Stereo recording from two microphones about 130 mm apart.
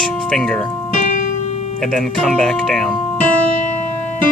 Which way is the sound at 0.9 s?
65° left (ahead or behind).